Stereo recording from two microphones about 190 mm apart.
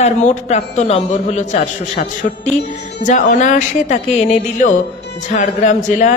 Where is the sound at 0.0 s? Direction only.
35° left (ahead or behind).